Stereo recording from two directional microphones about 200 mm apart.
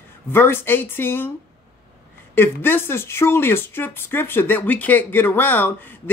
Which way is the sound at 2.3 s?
10° left (ahead or behind).